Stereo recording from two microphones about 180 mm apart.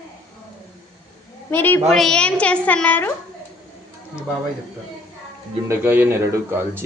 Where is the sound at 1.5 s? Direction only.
10° left (ahead or behind).